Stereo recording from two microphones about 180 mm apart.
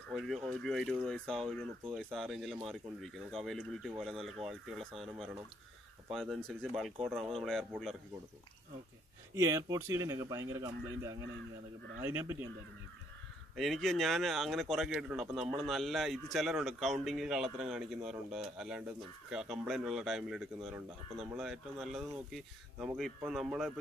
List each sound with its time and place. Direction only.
0.1 s a man's voice: centre (ahead or behind)
9.3 s speech: 15° right (ahead or behind)
13.6 s a man's voice: centre (ahead or behind)